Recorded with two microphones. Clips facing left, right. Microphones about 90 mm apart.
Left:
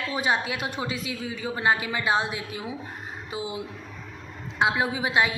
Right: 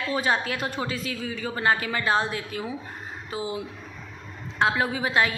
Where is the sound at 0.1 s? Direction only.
15° left (ahead or behind).